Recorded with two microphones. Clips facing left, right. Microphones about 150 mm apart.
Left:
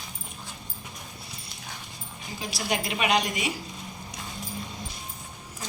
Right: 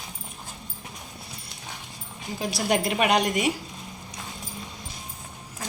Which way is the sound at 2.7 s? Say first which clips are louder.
Right 4 dB; 50° right (ahead or behind).